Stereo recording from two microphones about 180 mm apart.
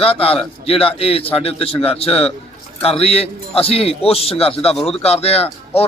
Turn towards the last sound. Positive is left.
turn(degrees=35)  # may be behind; listen again after turning